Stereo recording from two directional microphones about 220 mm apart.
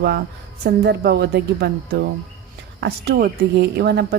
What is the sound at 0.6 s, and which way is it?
Speech, 45° right (ahead or behind).